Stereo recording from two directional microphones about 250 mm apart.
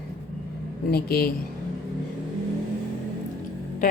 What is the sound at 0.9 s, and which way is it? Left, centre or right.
Speech, left.